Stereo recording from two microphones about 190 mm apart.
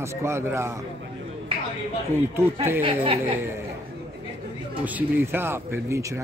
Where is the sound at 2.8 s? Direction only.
30° right (ahead or behind).